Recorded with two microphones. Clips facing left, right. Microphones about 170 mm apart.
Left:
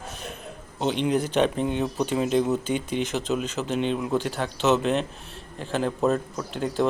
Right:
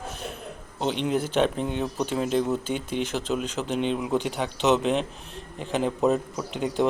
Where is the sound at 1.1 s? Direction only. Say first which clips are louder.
Right 1 dB; centre (ahead or behind).